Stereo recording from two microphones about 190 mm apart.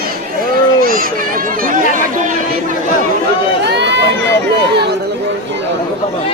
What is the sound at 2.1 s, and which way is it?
Chatter, 40° right (ahead or behind).